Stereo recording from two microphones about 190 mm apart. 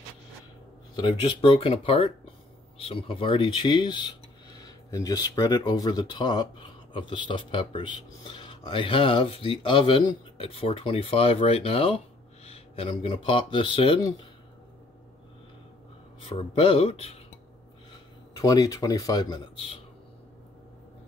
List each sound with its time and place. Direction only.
0.9 s speech: 25° left (ahead or behind)
16.3 s speech: 30° left (ahead or behind)
18.4 s speech: 20° left (ahead or behind)